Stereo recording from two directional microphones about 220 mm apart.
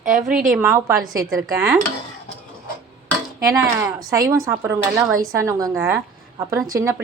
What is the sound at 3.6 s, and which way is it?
Speech, 15° right (ahead or behind).